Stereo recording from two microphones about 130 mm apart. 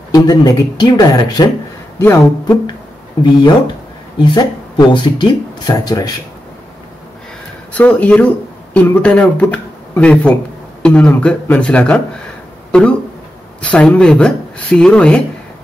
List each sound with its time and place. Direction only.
0.1 s speech: 30° left (ahead or behind)
2.0 s speech: 15° left (ahead or behind)
3.2 s speech: 35° left (ahead or behind)
7.7 s speech: 10° left (ahead or behind)
13.6 s speech: 10° left (ahead or behind)